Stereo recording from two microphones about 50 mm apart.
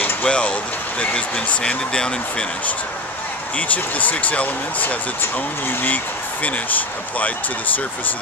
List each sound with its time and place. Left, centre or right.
0.2 s speech: left
3.5 s speech: left
5.2 s speech: left
6.4 s speech: left